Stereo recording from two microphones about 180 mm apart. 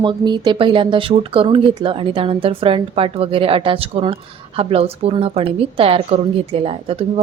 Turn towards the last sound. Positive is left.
turn(degrees=-30)  # may be behind; listen again after turning